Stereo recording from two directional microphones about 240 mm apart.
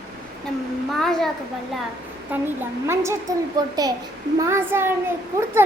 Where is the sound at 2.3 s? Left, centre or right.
Centre.